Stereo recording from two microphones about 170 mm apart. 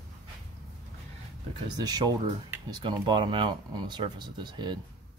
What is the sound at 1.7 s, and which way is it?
Speech, 25° right (ahead or behind).